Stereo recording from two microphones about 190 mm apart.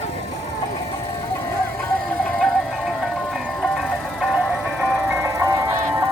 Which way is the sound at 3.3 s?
Centre (ahead or behind).